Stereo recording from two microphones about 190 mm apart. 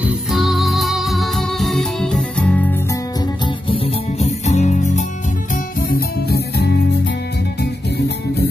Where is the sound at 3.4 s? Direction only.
30° left (ahead or behind).